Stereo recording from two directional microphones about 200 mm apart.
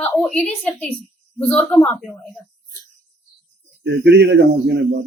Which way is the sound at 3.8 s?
60° right (ahead or behind).